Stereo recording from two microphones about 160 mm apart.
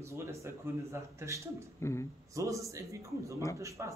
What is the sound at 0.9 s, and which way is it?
Speech, 20° right (ahead or behind).